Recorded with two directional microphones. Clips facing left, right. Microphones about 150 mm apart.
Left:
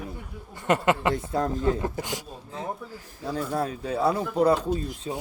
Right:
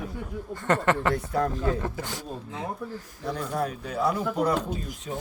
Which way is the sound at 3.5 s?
30° left (ahead or behind).